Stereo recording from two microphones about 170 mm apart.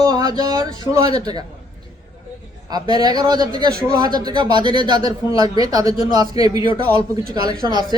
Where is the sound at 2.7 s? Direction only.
25° right (ahead or behind).